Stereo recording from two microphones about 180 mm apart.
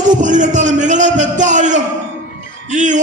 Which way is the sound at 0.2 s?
45° right (ahead or behind).